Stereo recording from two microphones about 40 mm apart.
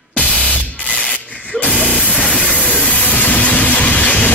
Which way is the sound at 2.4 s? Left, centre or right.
Left.